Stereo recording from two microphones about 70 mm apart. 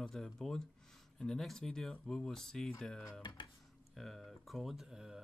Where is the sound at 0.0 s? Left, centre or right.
Centre.